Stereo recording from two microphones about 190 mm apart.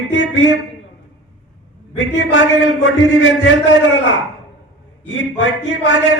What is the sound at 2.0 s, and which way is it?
A man's voice, 80° left.